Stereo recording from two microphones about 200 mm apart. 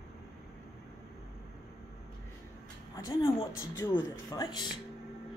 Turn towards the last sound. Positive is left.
turn(degrees=20)  # may be behind; listen again after turning